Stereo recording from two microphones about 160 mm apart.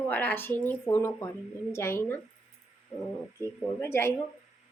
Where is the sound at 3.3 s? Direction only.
15° left (ahead or behind).